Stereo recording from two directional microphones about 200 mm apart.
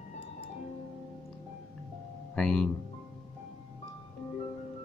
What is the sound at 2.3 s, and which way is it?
Speech, 5° left (ahead or behind).